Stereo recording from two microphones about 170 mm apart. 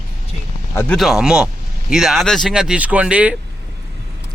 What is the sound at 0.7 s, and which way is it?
Speech, 15° left (ahead or behind).